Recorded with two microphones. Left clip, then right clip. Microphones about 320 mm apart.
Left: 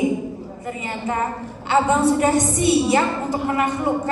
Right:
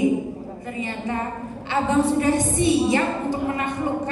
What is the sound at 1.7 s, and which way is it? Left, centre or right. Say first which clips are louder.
A woman's voice: left 4 dB; left.